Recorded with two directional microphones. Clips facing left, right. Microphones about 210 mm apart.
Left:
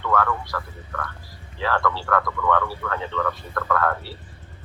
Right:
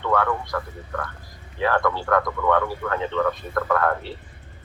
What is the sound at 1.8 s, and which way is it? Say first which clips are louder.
Speech: right 2 dB; 50° right (ahead or behind).